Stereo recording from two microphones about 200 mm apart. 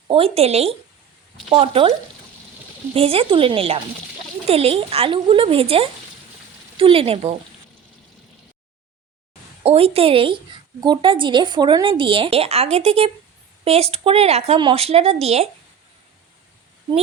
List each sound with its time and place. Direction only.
0.1 s a woman's voice: 30° right (ahead or behind)
2.9 s a woman's voice: 30° right (ahead or behind)
9.6 s a woman's voice: 30° right (ahead or behind)